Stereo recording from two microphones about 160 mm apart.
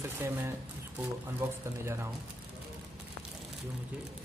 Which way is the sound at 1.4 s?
15° right (ahead or behind).